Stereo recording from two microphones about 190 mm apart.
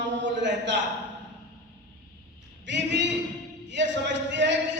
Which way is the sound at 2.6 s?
70° right (ahead or behind).